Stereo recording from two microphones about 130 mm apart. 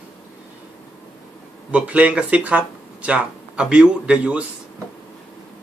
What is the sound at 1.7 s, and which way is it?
Speech, 10° right (ahead or behind).